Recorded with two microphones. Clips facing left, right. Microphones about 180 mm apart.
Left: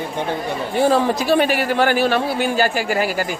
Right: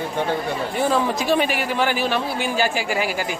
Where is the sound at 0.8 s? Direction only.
35° left (ahead or behind).